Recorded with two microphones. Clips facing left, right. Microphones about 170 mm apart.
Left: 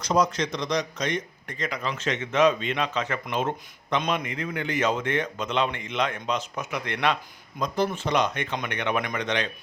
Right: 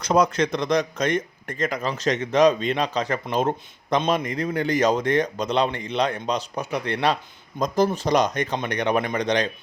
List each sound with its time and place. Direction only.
0.0 s a man's voice: 60° right (ahead or behind); by 9.5 s 35° right (ahead or behind)